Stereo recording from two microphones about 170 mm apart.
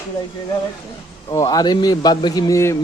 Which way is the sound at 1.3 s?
20° left (ahead or behind).